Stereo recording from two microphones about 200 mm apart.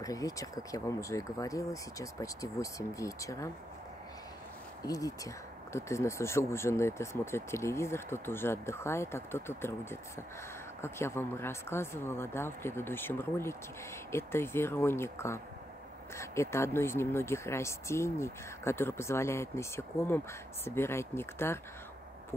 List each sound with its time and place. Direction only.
0.0 s speech: 15° left (ahead or behind)
4.8 s speech: 15° left (ahead or behind)